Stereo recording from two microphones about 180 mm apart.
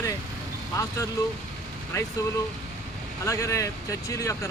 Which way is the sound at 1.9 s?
20° left (ahead or behind).